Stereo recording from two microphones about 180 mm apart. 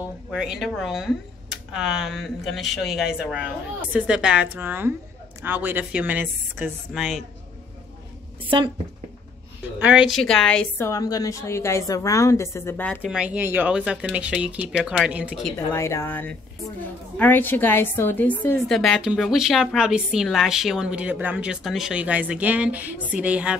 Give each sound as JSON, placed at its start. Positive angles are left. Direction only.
{"t": 0.3, "sound": "a woman's voice", "side_deg": -5}
{"t": 9.8, "sound": "a woman's voice", "side_deg": -5}
{"t": 10.9, "sound": "a woman's voice", "side_deg": 20}
{"t": 13.0, "sound": "a woman's voice", "side_deg": -5}
{"t": 15.5, "sound": "a woman's voice", "side_deg": 15}